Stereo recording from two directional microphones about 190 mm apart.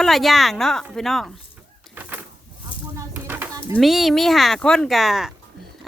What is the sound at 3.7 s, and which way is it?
Speech, centre (ahead or behind).